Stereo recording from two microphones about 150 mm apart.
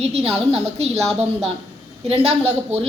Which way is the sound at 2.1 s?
45° right (ahead or behind).